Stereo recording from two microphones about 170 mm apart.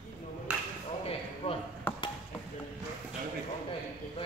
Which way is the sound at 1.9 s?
10° left (ahead or behind).